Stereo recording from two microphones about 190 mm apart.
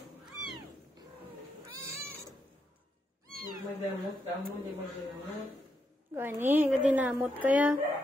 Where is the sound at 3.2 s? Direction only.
50° right (ahead or behind).